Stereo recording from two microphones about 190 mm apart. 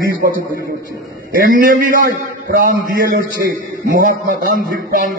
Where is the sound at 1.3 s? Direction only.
50° right (ahead or behind).